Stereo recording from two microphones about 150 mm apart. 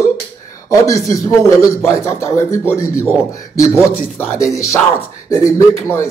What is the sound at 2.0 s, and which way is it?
Speech, 45° right (ahead or behind).